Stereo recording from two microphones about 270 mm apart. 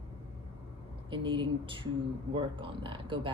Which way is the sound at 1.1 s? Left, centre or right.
Centre.